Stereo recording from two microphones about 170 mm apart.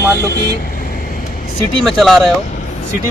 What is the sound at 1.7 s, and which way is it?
Speech, centre (ahead or behind).